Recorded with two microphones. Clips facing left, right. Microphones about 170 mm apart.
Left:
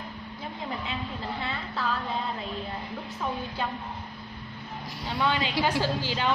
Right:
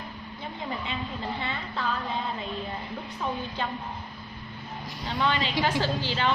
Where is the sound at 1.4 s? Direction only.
Centre (ahead or behind).